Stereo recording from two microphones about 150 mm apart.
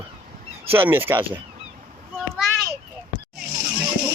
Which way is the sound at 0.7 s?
15° right (ahead or behind).